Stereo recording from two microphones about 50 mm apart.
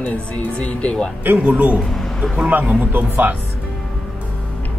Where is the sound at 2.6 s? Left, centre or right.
Right.